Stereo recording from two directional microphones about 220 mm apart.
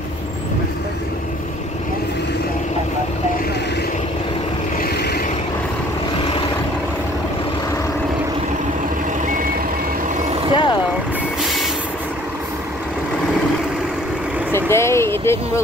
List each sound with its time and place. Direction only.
4.7 s vehicle: 45° left (ahead or behind)
10.5 s vehicle: 20° left (ahead or behind)
14.5 s vehicle: 10° left (ahead or behind)